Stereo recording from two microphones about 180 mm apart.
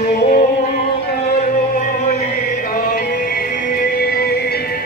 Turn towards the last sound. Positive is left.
turn(degrees=60)  # may be behind; listen again after turning